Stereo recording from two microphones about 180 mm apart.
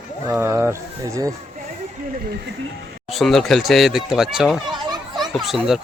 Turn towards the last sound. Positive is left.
turn(degrees=0)  # may be behind; listen again after turning